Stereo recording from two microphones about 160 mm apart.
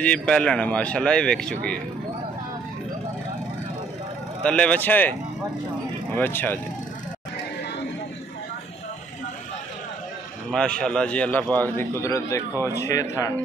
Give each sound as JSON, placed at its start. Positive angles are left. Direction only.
{"t": 0.0, "sound": "a man's voice", "side_deg": 5}
{"t": 4.4, "sound": "a man's voice", "side_deg": 5}
{"t": 6.1, "sound": "a man's voice", "side_deg": 10}
{"t": 10.5, "sound": "a man's voice", "side_deg": 5}